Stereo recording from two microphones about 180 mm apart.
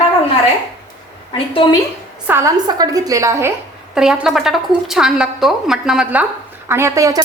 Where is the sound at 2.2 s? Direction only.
10° right (ahead or behind).